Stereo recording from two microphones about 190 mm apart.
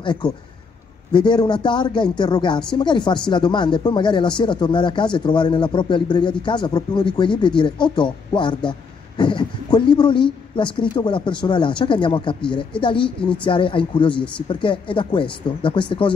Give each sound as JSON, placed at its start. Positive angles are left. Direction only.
{"t": 0.0, "sound": "a man's voice", "side_deg": 25}